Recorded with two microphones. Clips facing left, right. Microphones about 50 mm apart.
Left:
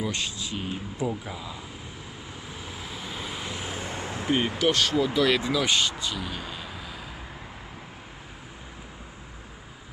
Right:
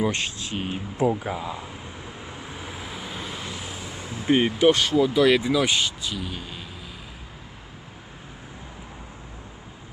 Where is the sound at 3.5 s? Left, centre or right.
Left.